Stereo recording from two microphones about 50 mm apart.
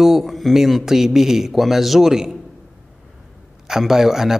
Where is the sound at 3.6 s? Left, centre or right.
Centre.